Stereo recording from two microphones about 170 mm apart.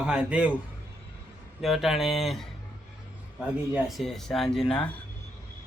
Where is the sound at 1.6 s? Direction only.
Centre (ahead or behind).